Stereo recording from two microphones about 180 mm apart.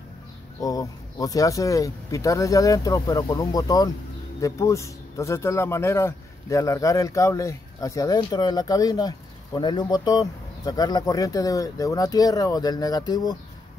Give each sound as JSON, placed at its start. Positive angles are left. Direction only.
{"t": 0.6, "sound": "speech", "side_deg": 20}